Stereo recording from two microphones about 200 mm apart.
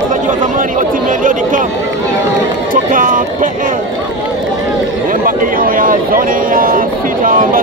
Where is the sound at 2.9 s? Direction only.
40° right (ahead or behind).